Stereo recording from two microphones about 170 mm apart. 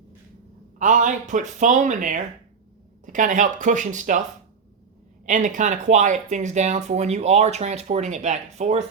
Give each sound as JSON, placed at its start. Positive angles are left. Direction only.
{"t": 0.8, "sound": "speech", "side_deg": -45}
{"t": 5.2, "sound": "speech", "side_deg": -45}